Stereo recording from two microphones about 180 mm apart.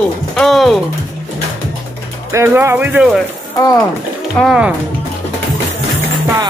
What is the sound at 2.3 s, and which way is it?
Speech, 15° right (ahead or behind).